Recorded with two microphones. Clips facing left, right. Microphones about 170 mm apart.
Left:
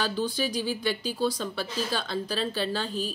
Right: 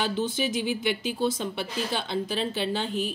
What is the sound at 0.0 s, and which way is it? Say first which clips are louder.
A woman's voice: right 1 dB; 20° right (ahead or behind).